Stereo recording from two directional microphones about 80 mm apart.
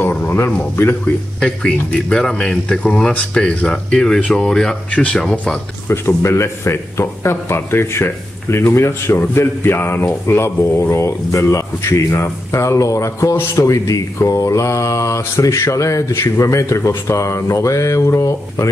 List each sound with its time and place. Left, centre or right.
0.0 s speech: centre
1.4 s speech: centre
5.9 s a man's voice: left